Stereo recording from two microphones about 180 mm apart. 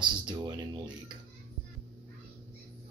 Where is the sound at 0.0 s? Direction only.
25° right (ahead or behind).